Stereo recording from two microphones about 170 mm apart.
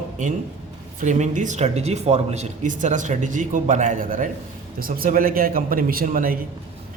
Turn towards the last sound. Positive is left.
turn(degrees=-55)  # may be behind; listen again after turning